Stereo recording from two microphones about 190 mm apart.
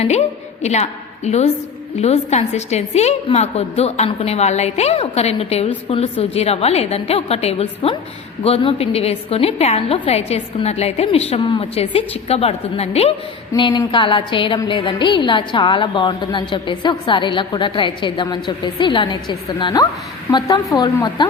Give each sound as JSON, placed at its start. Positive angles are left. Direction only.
{"t": 0.0, "sound": "a woman's voice", "side_deg": 35}